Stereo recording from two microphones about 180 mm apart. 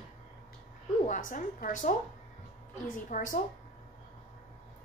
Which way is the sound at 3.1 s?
45° left (ahead or behind).